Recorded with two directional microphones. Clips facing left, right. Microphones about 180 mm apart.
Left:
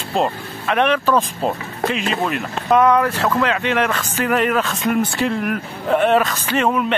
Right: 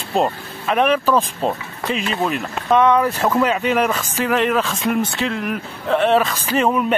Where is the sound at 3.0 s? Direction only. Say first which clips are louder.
Right 1 dB; 10° right (ahead or behind).